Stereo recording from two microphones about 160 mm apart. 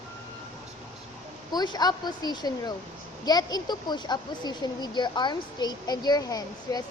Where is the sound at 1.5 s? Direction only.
25° left (ahead or behind).